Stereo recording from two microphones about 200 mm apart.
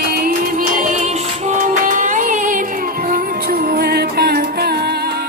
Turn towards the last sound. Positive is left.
turn(degrees=-50)  # may be behind; listen again after turning